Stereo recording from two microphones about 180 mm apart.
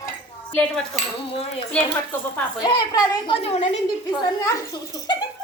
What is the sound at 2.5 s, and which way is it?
A woman's voice, 20° left (ahead or behind).